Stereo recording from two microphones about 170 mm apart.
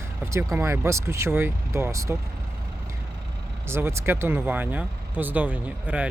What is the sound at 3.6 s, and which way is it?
Speech, 15° right (ahead or behind).